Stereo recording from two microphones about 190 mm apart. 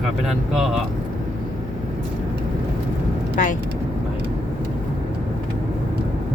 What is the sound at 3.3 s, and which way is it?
Speech, 45° left (ahead or behind).